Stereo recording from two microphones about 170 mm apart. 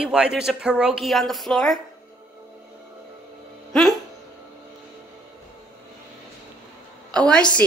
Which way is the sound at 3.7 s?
Centre (ahead or behind).